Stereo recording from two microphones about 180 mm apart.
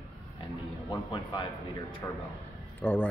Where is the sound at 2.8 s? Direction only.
10° left (ahead or behind).